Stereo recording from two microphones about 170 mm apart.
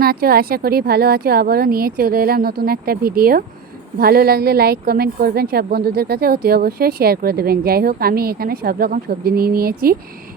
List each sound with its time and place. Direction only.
0.0 s a woman's voice: 60° right (ahead or behind)